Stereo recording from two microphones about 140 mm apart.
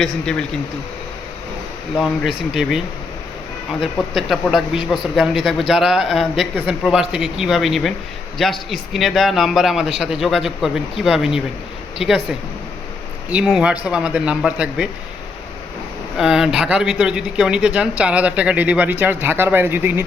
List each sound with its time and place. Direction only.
0.0 s speech: 5° left (ahead or behind)
2.0 s speech: centre (ahead or behind)
4.1 s speech: centre (ahead or behind)
13.3 s speech: 5° right (ahead or behind)
16.1 s speech: 5° right (ahead or behind)